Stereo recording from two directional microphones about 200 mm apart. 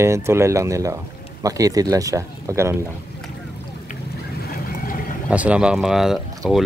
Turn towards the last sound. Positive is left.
turn(degrees=0)  # may be behind; listen again after turning